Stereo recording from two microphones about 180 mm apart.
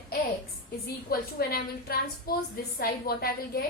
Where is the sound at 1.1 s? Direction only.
55° left (ahead or behind).